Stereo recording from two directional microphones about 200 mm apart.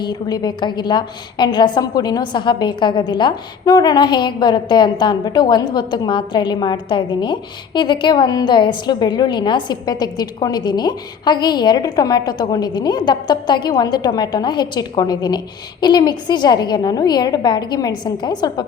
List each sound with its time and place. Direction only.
0.0 s a woman's voice: 20° left (ahead or behind)